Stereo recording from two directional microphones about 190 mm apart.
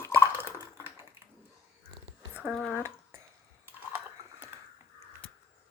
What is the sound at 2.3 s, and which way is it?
Speech, 5° right (ahead or behind).